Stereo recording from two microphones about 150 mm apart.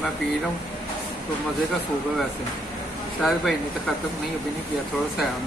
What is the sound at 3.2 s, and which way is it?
Speech, centre (ahead or behind).